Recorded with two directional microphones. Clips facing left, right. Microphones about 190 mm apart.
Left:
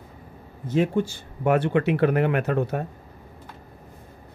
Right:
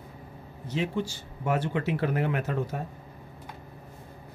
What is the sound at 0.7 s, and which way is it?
Speech, 50° left (ahead or behind).